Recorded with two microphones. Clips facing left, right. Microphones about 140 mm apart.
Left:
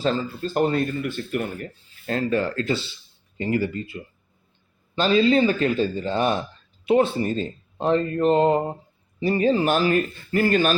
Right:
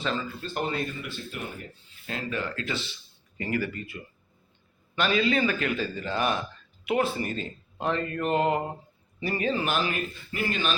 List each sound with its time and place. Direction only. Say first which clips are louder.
0.0 s speech: left 7 dB; 35° left (ahead or behind); by 1.6 s 55° left (ahead or behind)
2.0 s a man's voice: left 9 dB; 40° left (ahead or behind)